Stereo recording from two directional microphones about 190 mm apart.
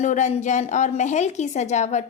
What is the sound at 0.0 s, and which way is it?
A woman's voice, 40° left (ahead or behind).